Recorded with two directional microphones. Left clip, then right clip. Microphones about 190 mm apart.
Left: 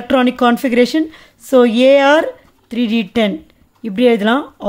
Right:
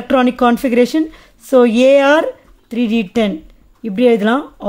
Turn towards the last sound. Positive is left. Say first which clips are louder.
# even
turn(degrees=-5)  # may be behind; listen again after turning